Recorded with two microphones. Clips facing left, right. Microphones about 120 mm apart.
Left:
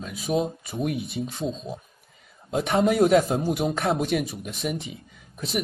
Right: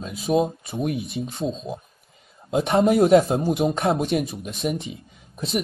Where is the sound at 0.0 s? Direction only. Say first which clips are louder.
Right 4 dB; 25° right (ahead or behind).